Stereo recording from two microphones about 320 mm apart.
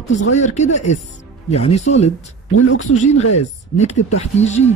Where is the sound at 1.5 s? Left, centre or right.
Centre.